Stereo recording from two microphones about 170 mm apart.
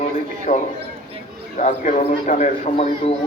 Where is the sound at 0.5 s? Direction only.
55° left (ahead or behind).